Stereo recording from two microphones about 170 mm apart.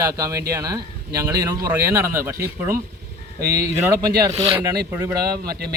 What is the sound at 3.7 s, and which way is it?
Speech, 15° right (ahead or behind).